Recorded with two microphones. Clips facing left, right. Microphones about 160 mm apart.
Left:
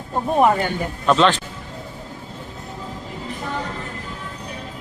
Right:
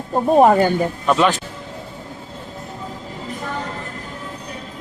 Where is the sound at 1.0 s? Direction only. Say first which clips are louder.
Left 2 dB; 10° right (ahead or behind).